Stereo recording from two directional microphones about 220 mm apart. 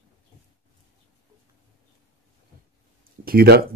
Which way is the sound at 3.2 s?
45° right (ahead or behind).